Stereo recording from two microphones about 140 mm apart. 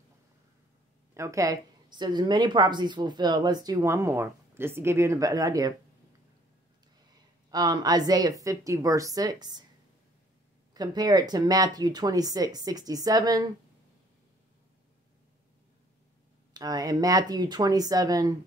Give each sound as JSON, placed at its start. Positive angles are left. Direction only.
{"t": 1.1, "sound": "a woman's voice", "side_deg": -20}
{"t": 7.5, "sound": "a woman's voice", "side_deg": -30}
{"t": 10.7, "sound": "a woman's voice", "side_deg": -30}
{"t": 16.5, "sound": "a woman's voice", "side_deg": -25}